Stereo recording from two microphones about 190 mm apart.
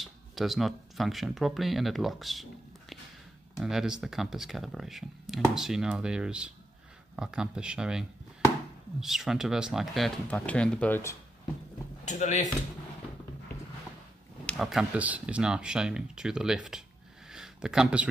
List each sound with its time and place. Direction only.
0.0 s speech: centre (ahead or behind)
3.5 s speech: centre (ahead or behind)
12.0 s speech: 40° left (ahead or behind)
14.4 s speech: centre (ahead or behind)
17.3 s a sound: 5° right (ahead or behind)